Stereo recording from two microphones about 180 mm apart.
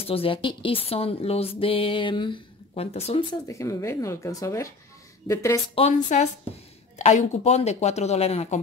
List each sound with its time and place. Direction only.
0.0 s speech: 30° left (ahead or behind)
5.8 s speech: 40° left (ahead or behind)